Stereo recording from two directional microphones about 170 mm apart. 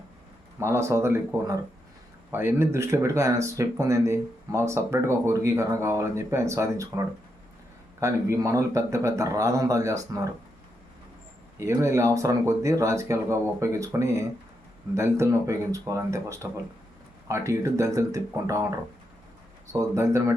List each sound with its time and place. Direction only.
0.6 s a man's voice: 15° right (ahead or behind)
11.6 s a man's voice: 15° right (ahead or behind)
19.7 s speech: 20° right (ahead or behind)